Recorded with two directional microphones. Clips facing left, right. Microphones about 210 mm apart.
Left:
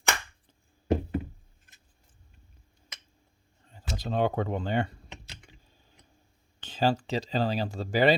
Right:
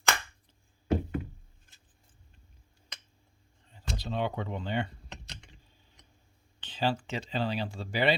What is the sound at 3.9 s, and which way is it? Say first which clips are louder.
Speech: left 5 dB; 45° left (ahead or behind).